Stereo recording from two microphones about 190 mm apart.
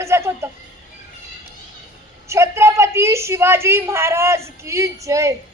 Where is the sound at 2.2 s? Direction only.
15° right (ahead or behind).